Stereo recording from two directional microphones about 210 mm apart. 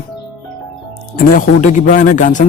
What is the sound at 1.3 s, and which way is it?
A man's voice, 40° left (ahead or behind).